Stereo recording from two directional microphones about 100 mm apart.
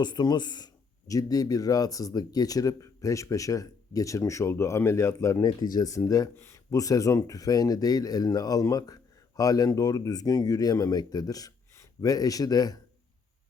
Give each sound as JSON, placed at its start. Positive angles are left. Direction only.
{"t": 0.0, "sound": "speech", "side_deg": 45}
{"t": 5.5, "sound": "speech", "side_deg": 45}